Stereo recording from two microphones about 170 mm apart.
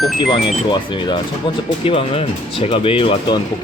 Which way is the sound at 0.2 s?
30° left (ahead or behind).